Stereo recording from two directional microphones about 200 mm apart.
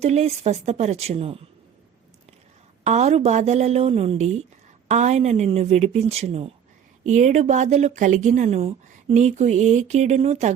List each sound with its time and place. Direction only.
0.0 s speech: 30° right (ahead or behind)
2.8 s speech: 35° right (ahead or behind)